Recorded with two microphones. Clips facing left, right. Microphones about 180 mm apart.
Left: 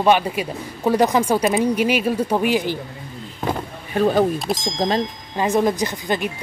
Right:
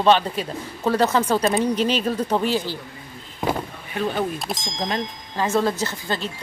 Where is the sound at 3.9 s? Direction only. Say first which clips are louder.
Left 8 dB; 40° left (ahead or behind).